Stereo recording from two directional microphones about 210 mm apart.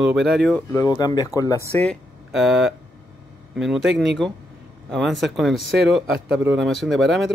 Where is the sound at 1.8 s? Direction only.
Centre (ahead or behind).